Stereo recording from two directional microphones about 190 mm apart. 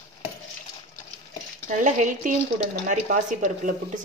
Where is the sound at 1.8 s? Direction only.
40° right (ahead or behind).